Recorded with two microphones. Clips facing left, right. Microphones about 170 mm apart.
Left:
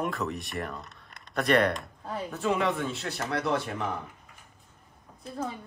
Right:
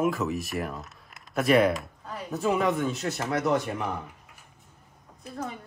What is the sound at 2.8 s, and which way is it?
Speech, 40° right (ahead or behind).